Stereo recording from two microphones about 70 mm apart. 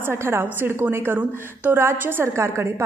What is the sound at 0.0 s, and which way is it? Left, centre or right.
A woman's voice, right.